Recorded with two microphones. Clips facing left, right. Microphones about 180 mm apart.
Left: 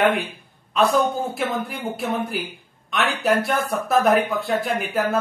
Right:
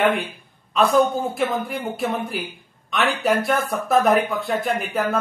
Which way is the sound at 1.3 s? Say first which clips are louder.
Right 2 dB; centre (ahead or behind).